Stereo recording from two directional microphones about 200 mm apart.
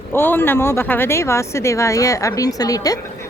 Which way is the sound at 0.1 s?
10° left (ahead or behind).